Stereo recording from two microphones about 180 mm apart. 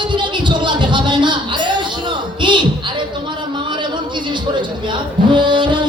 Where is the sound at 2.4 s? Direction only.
25° right (ahead or behind).